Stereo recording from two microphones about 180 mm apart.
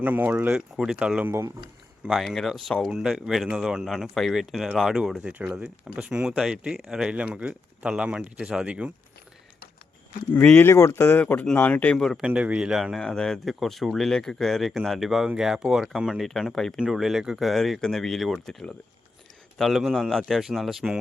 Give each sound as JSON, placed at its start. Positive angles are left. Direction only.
{"t": 0.0, "sound": "speech", "side_deg": -10}
{"t": 2.0, "sound": "speech", "side_deg": 0}
{"t": 10.3, "sound": "speech", "side_deg": 10}